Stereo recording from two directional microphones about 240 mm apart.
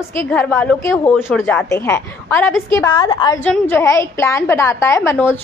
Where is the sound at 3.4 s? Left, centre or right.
Centre.